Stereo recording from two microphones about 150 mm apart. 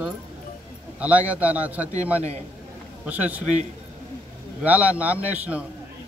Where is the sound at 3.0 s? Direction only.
10° right (ahead or behind).